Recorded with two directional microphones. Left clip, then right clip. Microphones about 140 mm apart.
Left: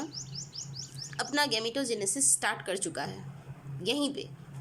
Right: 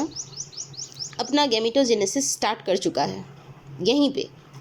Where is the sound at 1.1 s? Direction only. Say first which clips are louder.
Right 8 dB; 25° right (ahead or behind).